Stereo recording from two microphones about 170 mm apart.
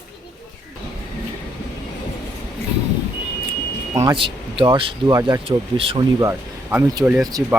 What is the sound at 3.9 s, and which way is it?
Speech, 25° right (ahead or behind).